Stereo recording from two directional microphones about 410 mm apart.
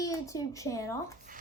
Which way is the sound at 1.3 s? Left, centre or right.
Centre.